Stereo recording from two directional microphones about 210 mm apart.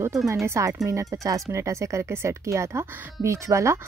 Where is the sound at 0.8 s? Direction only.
15° right (ahead or behind).